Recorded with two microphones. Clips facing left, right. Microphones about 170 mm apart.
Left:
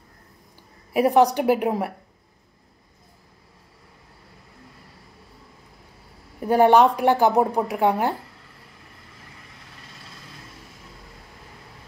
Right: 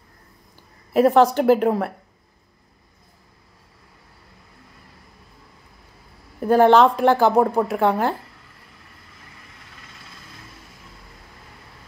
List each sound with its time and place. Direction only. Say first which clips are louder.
0.9 s speech: right 2 dB; 15° left (ahead or behind)
6.4 s a woman's voice: right 2 dB; 15° left (ahead or behind)